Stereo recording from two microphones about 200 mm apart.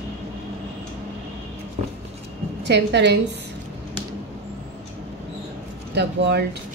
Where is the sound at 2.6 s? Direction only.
60° right (ahead or behind).